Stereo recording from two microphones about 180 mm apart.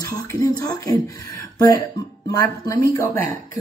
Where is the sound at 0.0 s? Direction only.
20° left (ahead or behind).